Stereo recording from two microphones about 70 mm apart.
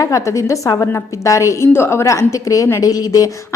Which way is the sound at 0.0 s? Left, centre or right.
Left.